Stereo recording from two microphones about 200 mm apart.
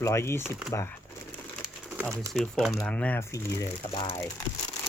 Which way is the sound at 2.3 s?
Centre (ahead or behind).